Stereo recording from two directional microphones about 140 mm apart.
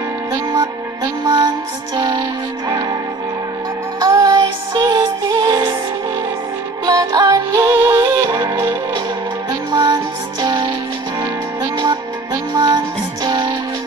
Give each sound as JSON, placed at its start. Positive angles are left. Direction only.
{"t": 1.2, "sound": "music", "side_deg": -30}
{"t": 4.0, "sound": "music", "side_deg": -25}
{"t": 6.9, "sound": "music", "side_deg": -25}
{"t": 8.4, "sound": "music", "side_deg": -30}
{"t": 12.5, "sound": "music", "side_deg": -30}